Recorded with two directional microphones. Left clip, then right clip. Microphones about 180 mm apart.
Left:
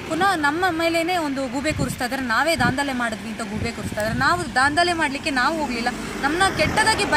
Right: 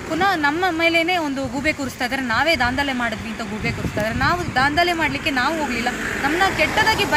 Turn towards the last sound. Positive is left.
turn(degrees=-10)  # may be behind; listen again after turning